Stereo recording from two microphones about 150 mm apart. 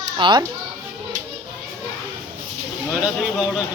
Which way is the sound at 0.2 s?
30° right (ahead or behind).